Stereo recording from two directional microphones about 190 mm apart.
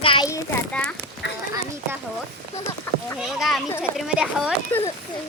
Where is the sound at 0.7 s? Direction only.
5° left (ahead or behind).